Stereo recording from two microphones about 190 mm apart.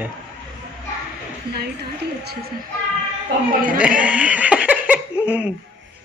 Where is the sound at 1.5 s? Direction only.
55° right (ahead or behind).